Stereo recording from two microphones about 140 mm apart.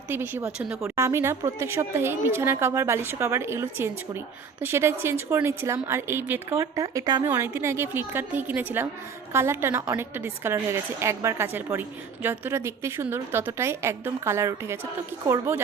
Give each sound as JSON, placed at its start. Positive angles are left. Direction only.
{"t": 0.1, "sound": "a woman's voice", "side_deg": -15}
{"t": 0.9, "sound": "a woman's voice", "side_deg": -20}